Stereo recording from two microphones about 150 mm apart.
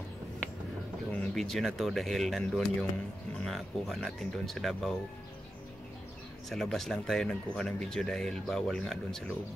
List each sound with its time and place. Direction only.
1.1 s speech: centre (ahead or behind)
6.5 s speech: centre (ahead or behind)